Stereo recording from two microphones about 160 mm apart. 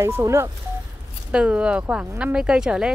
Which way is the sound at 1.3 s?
5° right (ahead or behind).